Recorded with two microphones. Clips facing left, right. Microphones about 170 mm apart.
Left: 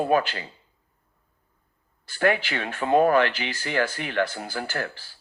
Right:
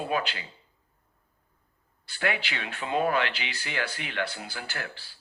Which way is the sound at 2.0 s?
45° left (ahead or behind).